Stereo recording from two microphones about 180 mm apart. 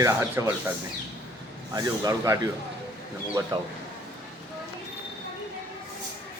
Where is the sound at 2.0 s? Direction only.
20° right (ahead or behind).